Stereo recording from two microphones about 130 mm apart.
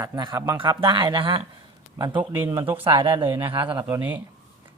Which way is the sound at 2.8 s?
45° right (ahead or behind).